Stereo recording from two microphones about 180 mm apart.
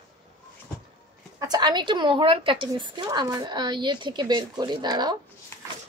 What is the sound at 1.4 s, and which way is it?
A woman's voice, 25° right (ahead or behind).